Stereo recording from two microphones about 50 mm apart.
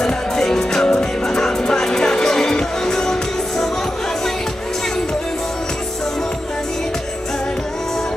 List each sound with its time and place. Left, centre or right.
0.0 s music: centre